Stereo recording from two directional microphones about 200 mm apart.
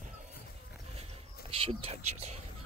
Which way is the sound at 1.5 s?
30° right (ahead or behind).